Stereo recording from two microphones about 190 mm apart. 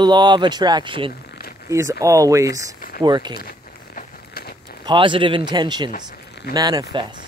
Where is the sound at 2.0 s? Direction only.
15° right (ahead or behind).